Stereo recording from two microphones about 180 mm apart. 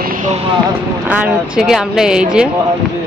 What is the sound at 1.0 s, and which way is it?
A woman's voice, 5° right (ahead or behind).